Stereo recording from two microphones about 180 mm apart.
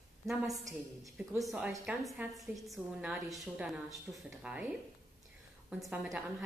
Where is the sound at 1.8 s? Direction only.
5° right (ahead or behind).